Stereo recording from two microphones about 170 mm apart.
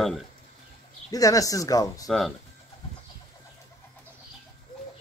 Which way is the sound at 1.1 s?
20° left (ahead or behind).